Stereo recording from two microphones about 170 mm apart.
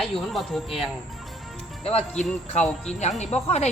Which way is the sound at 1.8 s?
35° left (ahead or behind).